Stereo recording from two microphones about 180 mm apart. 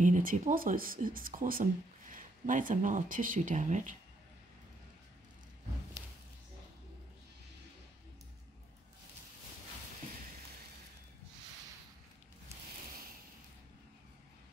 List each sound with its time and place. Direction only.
0.0 s speech: 45° right (ahead or behind)